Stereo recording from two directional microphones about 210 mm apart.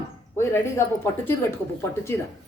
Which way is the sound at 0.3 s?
10° left (ahead or behind).